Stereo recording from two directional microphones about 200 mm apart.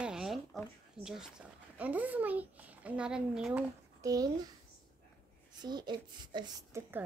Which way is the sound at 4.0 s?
15° right (ahead or behind).